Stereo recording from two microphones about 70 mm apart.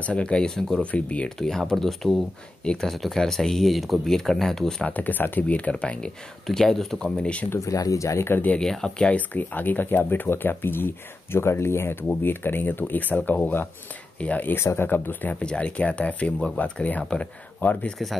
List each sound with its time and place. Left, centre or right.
0.0 s speech: centre
0.9 s speech: centre
1.4 s speech: centre
2.9 s speech: centre
4.8 s speech: left
5.7 s speech: centre
7.4 s speech: left
8.5 s speech: centre; by 15.3 s left
15.3 s speech: centre